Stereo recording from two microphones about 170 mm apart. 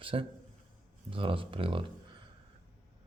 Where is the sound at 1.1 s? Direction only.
30° right (ahead or behind).